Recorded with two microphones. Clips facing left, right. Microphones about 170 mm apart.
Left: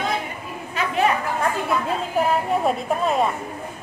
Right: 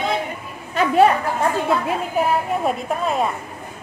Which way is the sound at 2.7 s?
Centre (ahead or behind).